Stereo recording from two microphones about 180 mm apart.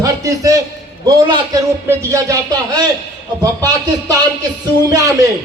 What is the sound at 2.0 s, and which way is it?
Speech, 15° right (ahead or behind).